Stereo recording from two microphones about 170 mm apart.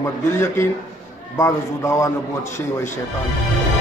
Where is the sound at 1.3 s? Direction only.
15° left (ahead or behind).